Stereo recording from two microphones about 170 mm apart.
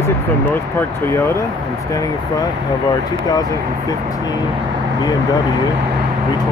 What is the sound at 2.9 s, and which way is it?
Speech, 20° left (ahead or behind).